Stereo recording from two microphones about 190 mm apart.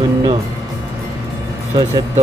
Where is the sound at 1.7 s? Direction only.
20° right (ahead or behind).